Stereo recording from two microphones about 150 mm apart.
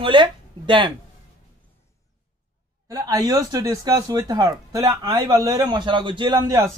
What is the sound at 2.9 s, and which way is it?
Speech, 25° right (ahead or behind).